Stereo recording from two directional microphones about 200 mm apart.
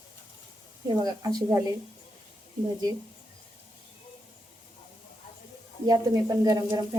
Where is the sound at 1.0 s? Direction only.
20° right (ahead or behind).